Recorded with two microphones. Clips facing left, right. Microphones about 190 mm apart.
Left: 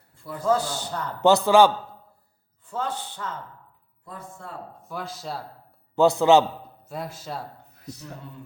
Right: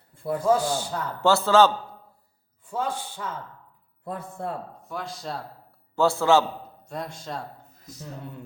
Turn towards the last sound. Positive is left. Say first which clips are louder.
# even
turn(degrees=5)  # may be behind; listen again after turning